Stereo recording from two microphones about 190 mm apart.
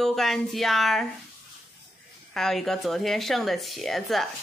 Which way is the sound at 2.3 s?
Centre (ahead or behind).